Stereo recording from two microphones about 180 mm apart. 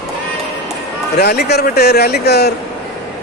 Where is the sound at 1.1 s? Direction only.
60° left (ahead or behind).